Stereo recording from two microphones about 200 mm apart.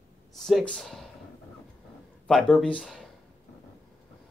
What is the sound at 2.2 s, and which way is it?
Speech, 5° left (ahead or behind).